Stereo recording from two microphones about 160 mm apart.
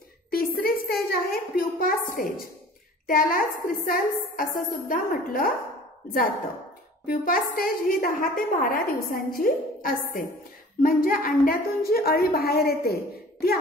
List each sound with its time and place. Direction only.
0.6 s a woman's voice: 65° left (ahead or behind)
7.1 s a woman's voice: 65° left (ahead or behind)